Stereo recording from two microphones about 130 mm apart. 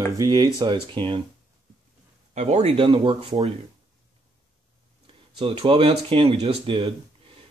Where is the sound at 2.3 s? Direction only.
60° right (ahead or behind); by 3.3 s 45° right (ahead or behind).